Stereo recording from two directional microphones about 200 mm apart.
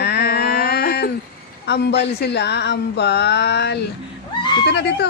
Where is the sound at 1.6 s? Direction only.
55° left (ahead or behind).